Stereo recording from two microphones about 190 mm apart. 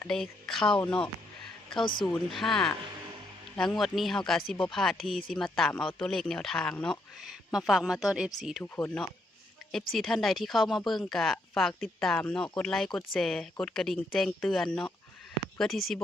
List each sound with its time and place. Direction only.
0.1 s speech: 5° left (ahead or behind)
1.8 s speech: 25° left (ahead or behind)
2.0 s speech: centre (ahead or behind)
8.6 s speech: 10° left (ahead or behind)